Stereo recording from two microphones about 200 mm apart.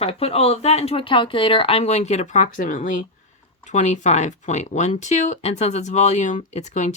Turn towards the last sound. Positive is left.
turn(degrees=35)  # may be behind; listen again after turning